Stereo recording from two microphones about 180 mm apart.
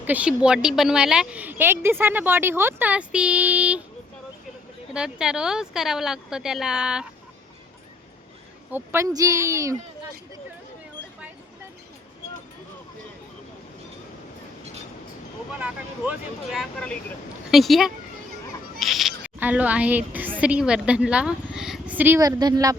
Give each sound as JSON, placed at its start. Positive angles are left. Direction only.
{"t": 0.0, "sound": "speech", "side_deg": -10}
{"t": 4.9, "sound": "speech", "side_deg": -5}
{"t": 8.7, "sound": "speech", "side_deg": -15}
{"t": 15.5, "sound": "speech", "side_deg": -10}